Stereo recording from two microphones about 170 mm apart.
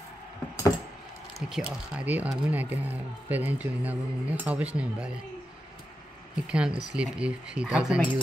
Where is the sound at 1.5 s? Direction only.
5° right (ahead or behind).